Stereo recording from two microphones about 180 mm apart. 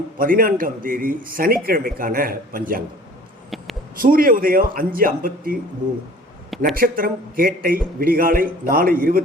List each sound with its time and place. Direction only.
0.2 s a man's voice: 50° right (ahead or behind)
3.9 s a man's voice: 50° right (ahead or behind)
6.7 s a man's voice: 50° right (ahead or behind)